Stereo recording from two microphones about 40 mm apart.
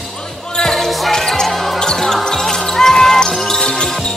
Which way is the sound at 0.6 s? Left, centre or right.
Centre.